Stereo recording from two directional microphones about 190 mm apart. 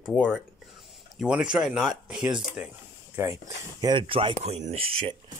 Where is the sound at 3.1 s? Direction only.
15° right (ahead or behind).